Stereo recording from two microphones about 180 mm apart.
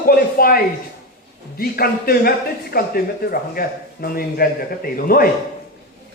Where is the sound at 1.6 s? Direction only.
55° left (ahead or behind).